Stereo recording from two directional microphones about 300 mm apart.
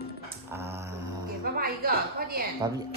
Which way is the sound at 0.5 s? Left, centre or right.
Centre.